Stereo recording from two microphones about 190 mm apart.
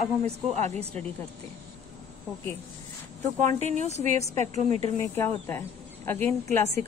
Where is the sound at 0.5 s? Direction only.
35° right (ahead or behind).